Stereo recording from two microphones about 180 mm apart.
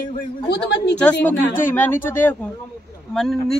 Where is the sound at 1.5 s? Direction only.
10° left (ahead or behind).